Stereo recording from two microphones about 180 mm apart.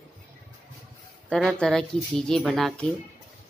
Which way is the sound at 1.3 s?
Centre (ahead or behind).